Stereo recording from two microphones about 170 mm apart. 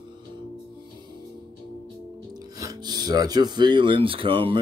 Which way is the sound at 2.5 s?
20° right (ahead or behind).